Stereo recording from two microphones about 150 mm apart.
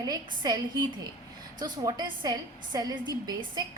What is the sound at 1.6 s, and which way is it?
A woman's voice, 30° right (ahead or behind).